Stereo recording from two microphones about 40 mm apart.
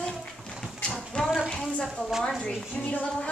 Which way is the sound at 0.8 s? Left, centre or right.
Centre.